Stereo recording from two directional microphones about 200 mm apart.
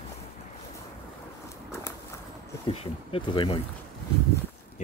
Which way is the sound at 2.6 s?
30° left (ahead or behind).